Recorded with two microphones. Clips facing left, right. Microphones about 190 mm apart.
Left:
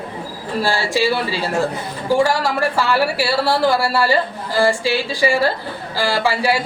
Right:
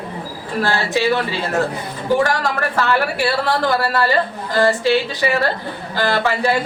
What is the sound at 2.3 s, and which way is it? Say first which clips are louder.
Speech: left 2 dB; 10° left (ahead or behind).